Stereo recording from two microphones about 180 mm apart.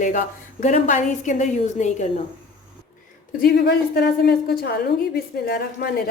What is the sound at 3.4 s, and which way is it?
A woman's voice, 60° left (ahead or behind).